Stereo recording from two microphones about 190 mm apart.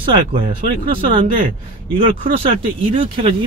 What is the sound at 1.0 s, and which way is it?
Speech, 45° right (ahead or behind).